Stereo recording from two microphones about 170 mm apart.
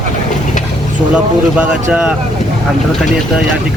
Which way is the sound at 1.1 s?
5° right (ahead or behind).